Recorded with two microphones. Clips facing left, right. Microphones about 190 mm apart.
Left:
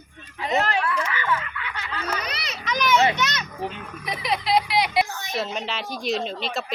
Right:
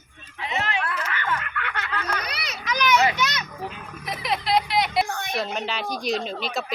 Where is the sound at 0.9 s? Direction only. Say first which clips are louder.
Left 3 dB; 55° right (ahead or behind).